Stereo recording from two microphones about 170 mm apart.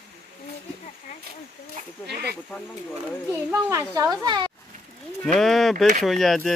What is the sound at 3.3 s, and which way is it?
A child's voice, 15° right (ahead or behind).